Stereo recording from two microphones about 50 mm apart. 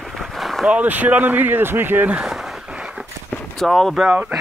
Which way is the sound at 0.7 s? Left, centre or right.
Right.